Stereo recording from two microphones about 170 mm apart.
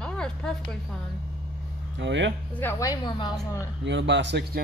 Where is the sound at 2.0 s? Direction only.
90° right.